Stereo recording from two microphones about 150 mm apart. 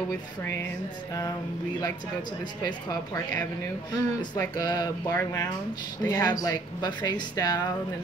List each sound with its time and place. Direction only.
2.6 s speech: 25° left (ahead or behind)